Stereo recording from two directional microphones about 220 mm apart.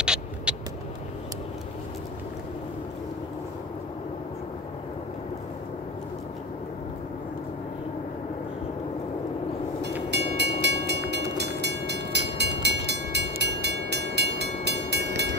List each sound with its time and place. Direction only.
0.0 s vehicle: 5° right (ahead or behind)
10.1 s train: 50° right (ahead or behind)